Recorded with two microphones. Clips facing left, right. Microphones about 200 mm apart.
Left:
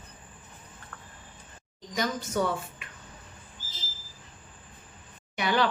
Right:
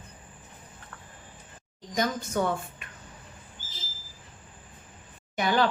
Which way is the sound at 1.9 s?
50° right (ahead or behind).